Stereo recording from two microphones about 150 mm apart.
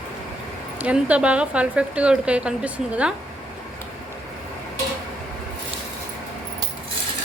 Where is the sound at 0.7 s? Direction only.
10° right (ahead or behind).